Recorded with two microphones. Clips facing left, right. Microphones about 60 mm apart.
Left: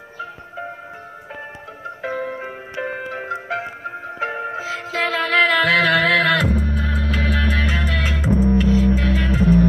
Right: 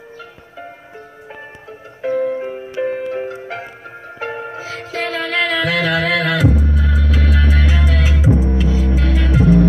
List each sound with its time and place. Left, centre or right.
2.0 s music: left
2.4 s music: centre
3.3 s music: left
8.3 s music: centre
8.5 s music: left